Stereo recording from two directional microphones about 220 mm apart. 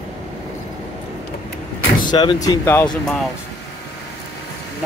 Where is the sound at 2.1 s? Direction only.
20° left (ahead or behind).